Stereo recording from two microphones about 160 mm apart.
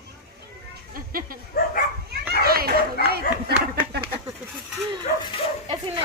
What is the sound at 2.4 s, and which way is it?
Speech, 70° right (ahead or behind).